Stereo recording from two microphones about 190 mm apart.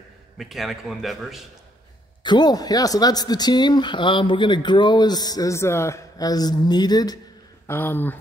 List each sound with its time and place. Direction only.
0.4 s a man's voice: centre (ahead or behind)
2.2 s speech: 20° left (ahead or behind)